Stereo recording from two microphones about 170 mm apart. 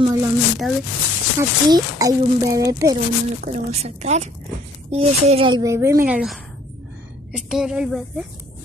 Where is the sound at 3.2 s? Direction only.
40° right (ahead or behind).